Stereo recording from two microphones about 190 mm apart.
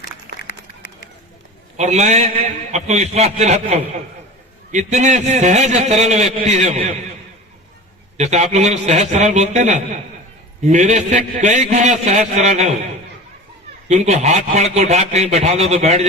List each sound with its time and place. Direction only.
1.7 s a man's voice: 35° right (ahead or behind)
8.2 s a man's voice: 35° right (ahead or behind)
13.8 s a man's voice: 35° right (ahead or behind)